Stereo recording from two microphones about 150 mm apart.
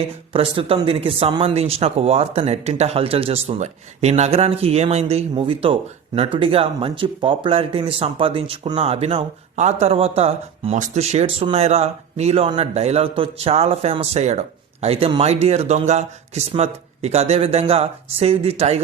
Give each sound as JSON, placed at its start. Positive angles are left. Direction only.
{"t": 0.3, "sound": "a man's voice", "side_deg": -35}